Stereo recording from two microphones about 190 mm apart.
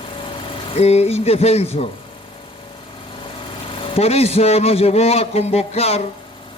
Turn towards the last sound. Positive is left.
turn(degrees=35)  # may be behind; listen again after turning